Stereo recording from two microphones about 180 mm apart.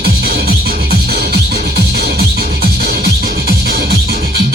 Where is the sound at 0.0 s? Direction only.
60° right (ahead or behind).